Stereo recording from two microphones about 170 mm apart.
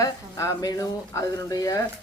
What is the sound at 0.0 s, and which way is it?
Speech, 20° left (ahead or behind).